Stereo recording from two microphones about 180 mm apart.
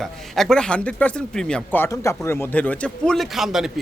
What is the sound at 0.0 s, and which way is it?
Speech, centre (ahead or behind).